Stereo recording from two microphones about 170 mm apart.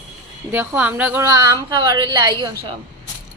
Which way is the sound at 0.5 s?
10° right (ahead or behind).